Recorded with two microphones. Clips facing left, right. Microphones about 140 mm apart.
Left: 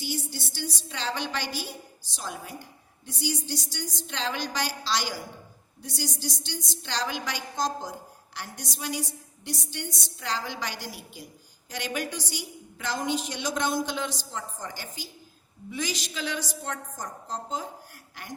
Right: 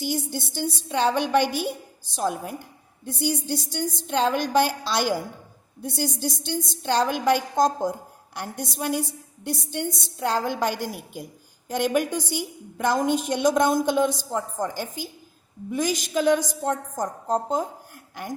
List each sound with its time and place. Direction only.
0.0 s a woman's voice: 50° right (ahead or behind)